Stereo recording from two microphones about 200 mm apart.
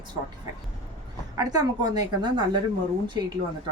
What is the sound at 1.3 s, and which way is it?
A woman's voice, 20° right (ahead or behind).